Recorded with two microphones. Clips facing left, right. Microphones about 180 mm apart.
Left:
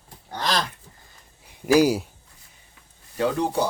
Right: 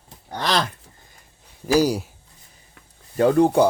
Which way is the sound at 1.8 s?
5° left (ahead or behind).